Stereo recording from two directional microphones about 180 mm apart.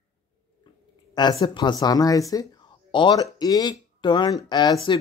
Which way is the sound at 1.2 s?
25° left (ahead or behind).